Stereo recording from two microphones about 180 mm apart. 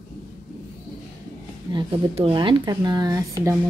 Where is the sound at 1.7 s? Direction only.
25° right (ahead or behind).